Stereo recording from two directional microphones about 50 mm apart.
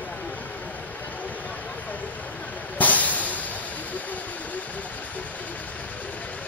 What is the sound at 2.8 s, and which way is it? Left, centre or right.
Drum kit, left.